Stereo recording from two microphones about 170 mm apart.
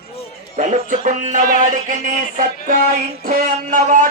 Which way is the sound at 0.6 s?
45° right (ahead or behind).